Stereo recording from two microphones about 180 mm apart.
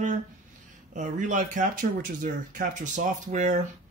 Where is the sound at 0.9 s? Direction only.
45° right (ahead or behind).